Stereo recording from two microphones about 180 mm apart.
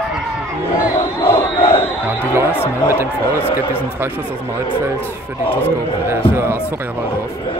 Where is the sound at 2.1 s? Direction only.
15° right (ahead or behind).